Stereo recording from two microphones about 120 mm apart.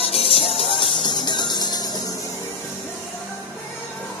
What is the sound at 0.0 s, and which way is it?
Music, 55° left (ahead or behind).